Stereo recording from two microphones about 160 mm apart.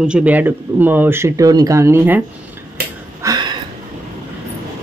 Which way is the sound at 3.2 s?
25° right (ahead or behind).